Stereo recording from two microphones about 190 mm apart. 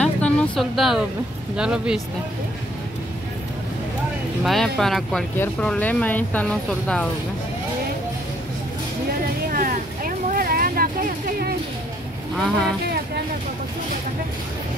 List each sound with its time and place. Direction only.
0.0 s vehicle: 5° left (ahead or behind)
1.6 s speech: 5° right (ahead or behind)
4.5 s speech: centre (ahead or behind)
9.5 s vehicle: 45° right (ahead or behind)
12.4 s speech: 5° left (ahead or behind)